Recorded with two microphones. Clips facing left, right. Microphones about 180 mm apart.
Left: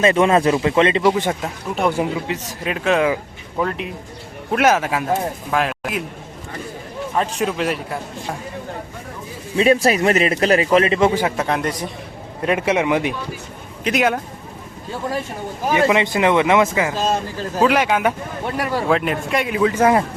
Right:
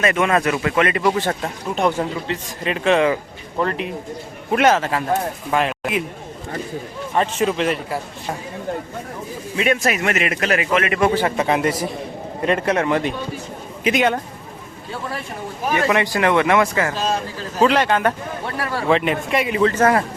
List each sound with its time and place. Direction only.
0.0 s speech: 30° left (ahead or behind)
1.2 s speech: 10° left (ahead or behind)
7.2 s speech: centre (ahead or behind)
9.6 s a man's voice: 30° left (ahead or behind)
11.1 s speech: 5° left (ahead or behind)
15.7 s speech: 20° left (ahead or behind)
17.6 s speech: 5° left (ahead or behind)
18.9 s speech: centre (ahead or behind)